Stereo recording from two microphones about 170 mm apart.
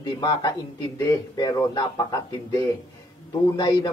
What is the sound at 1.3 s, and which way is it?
Speech, 20° left (ahead or behind).